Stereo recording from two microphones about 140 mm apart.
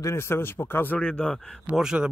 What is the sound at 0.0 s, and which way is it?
A man's voice, 20° left (ahead or behind).